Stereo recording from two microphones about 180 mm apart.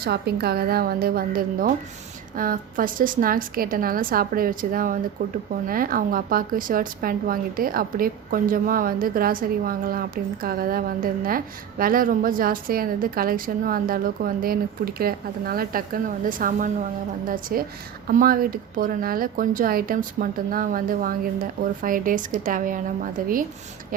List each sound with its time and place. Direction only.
0.0 s a woman's voice: 60° right (ahead or behind)